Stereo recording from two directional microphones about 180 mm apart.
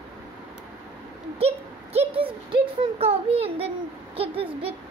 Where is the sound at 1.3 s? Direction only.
35° right (ahead or behind).